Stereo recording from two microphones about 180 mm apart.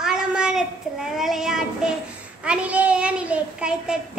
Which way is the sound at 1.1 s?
Centre (ahead or behind).